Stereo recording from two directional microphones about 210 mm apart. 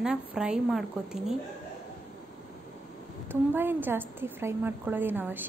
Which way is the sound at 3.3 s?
10° right (ahead or behind).